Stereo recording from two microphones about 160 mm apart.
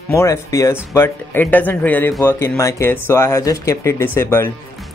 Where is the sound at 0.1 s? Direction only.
20° left (ahead or behind).